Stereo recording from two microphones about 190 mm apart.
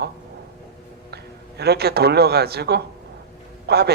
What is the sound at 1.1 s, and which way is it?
A man's voice, 60° right (ahead or behind).